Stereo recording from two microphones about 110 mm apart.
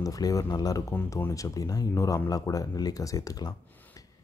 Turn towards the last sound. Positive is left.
turn(degrees=35)  # may be behind; listen again after turning